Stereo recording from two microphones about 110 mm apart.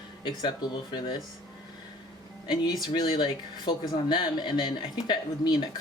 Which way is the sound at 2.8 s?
45° left (ahead or behind).